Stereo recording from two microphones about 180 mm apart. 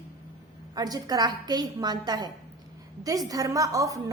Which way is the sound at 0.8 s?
20° right (ahead or behind).